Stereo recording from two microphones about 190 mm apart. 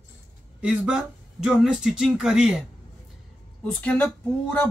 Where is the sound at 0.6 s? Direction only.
5° right (ahead or behind).